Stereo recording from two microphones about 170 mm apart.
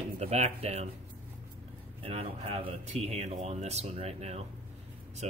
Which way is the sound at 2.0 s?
35° right (ahead or behind).